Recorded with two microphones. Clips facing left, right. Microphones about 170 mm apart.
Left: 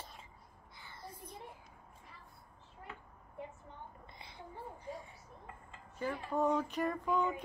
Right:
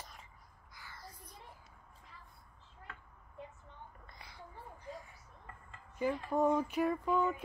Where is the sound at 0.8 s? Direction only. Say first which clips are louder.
Left 3 dB; 25° left (ahead or behind).